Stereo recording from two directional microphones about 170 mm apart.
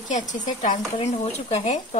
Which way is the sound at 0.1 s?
45° left (ahead or behind).